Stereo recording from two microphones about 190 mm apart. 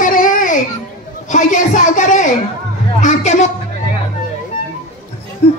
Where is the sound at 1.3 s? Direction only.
40° left (ahead or behind).